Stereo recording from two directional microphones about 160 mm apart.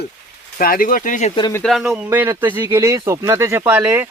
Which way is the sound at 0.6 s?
65° left (ahead or behind).